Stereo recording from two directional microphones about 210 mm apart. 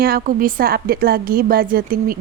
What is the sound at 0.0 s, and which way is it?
Speech, 45° right (ahead or behind).